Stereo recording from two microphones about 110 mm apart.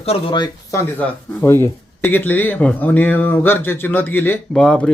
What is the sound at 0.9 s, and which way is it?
Speech, 20° left (ahead or behind).